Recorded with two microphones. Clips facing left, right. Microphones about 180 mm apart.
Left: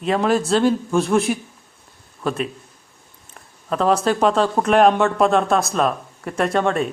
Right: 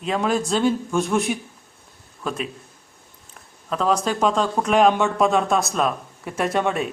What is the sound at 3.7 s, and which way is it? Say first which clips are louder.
Speech: left 3 dB; 5° left (ahead or behind).